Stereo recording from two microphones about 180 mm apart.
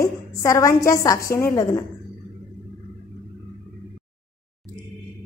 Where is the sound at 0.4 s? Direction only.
15° left (ahead or behind).